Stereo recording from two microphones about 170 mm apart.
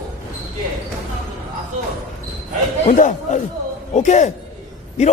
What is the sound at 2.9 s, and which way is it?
A man's voice, 45° left (ahead or behind).